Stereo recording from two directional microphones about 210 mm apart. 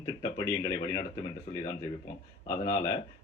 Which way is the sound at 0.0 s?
15° left (ahead or behind).